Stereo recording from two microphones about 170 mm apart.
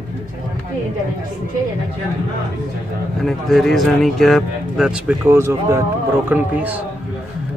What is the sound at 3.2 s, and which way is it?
Speech, centre (ahead or behind).